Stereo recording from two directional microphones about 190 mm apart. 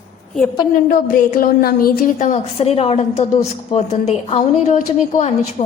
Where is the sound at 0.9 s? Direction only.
50° left (ahead or behind).